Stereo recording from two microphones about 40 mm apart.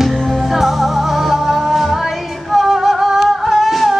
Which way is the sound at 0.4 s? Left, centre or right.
Centre.